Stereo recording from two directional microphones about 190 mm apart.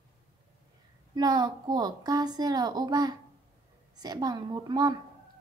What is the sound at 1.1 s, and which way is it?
A woman's voice, 20° right (ahead or behind).